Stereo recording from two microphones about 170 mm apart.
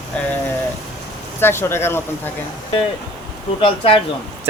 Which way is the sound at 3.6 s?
30° left (ahead or behind).